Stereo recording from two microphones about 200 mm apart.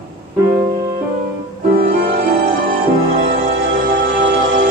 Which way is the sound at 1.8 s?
45° right (ahead or behind).